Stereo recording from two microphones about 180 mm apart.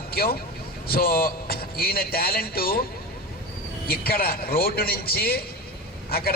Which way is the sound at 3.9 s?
55° left (ahead or behind).